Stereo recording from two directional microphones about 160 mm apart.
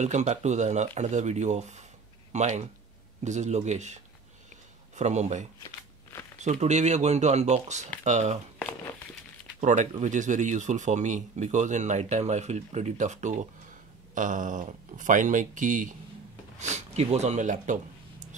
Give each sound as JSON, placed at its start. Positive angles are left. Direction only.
{"t": 0.0, "sound": "speech", "side_deg": -45}
{"t": 9.6, "sound": "speech", "side_deg": -50}